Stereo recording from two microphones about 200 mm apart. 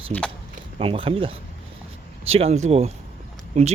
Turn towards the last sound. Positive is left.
turn(degrees=-35)  # may be behind; listen again after turning